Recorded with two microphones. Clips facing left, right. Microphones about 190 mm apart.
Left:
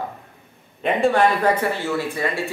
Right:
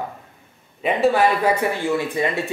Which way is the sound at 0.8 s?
5° right (ahead or behind).